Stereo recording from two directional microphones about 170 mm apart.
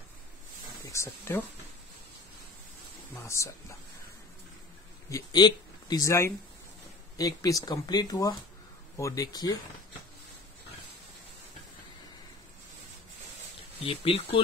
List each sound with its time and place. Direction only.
0.8 s speech: 15° left (ahead or behind)
3.3 s speech: 15° left (ahead or behind)
5.1 s speech: 25° left (ahead or behind)
13.7 s speech: 35° left (ahead or behind)